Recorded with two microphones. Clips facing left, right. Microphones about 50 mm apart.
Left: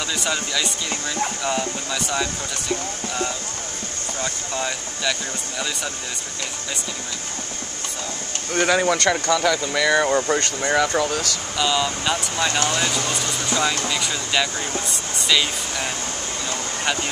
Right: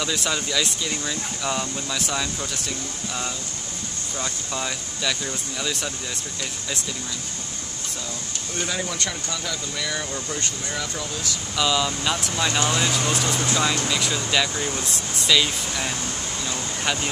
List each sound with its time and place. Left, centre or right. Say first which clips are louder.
0.0 s speech: left 1 dB; centre
4.6 s speech: left 3 dB; centre
8.6 s speech: left 11 dB; left
11.5 s speech: left 1 dB; centre